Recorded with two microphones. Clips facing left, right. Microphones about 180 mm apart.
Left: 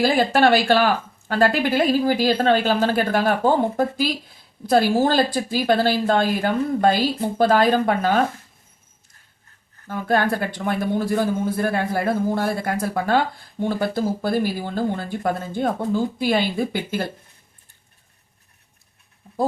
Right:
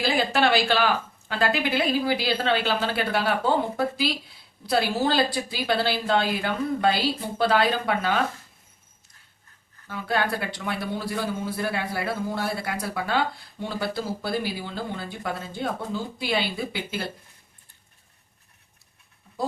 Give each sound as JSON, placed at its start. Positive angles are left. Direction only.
{"t": 0.0, "sound": "speech", "side_deg": 50}
{"t": 9.8, "sound": "speech", "side_deg": 50}